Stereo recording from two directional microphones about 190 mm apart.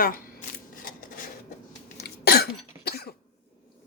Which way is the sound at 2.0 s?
55° left (ahead or behind).